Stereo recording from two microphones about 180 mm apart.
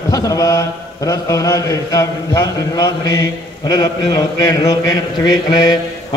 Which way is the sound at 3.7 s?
20° left (ahead or behind).